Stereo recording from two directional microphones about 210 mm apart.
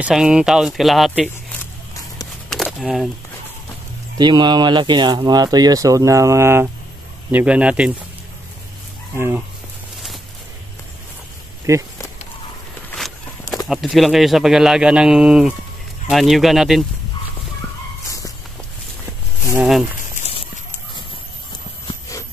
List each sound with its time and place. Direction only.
0.0 s speech: 5° right (ahead or behind)
2.5 s a sound: centre (ahead or behind)
4.2 s speech: 20° right (ahead or behind); by 7.9 s 5° right (ahead or behind)
9.1 s speech: 10° right (ahead or behind)
11.7 s speech: 15° right (ahead or behind)
13.7 s speech: centre (ahead or behind)
18.0 s a sound: 15° left (ahead or behind)
19.5 s speech: 5° right (ahead or behind)
20.2 s horse: 30° left (ahead or behind)